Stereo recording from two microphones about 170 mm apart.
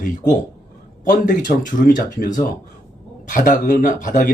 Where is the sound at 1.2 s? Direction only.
50° left (ahead or behind).